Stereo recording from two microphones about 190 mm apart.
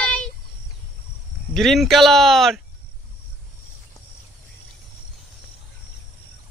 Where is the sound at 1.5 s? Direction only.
Centre (ahead or behind).